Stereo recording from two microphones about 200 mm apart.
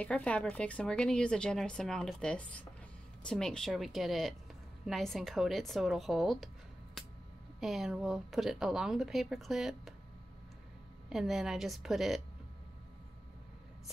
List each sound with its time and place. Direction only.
0.0 s a woman's voice: 5° left (ahead or behind)
7.6 s a woman's voice: centre (ahead or behind)
11.1 s a woman's voice: centre (ahead or behind)